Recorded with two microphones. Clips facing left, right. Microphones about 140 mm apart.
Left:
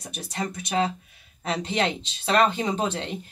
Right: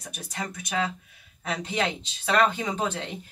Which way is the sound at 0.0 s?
30° left (ahead or behind).